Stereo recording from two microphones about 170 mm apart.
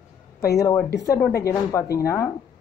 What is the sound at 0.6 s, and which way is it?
Speech, 20° left (ahead or behind).